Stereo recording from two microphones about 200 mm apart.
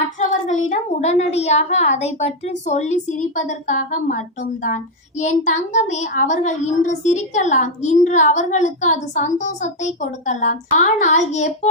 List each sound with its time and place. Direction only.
0.2 s a woman's voice: 35° left (ahead or behind)